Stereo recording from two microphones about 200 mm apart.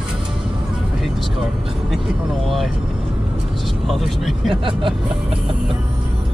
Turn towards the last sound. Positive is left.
turn(degrees=-25)  # may be behind; listen again after turning